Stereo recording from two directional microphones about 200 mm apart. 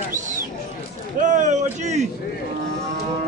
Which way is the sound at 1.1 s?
40° right (ahead or behind).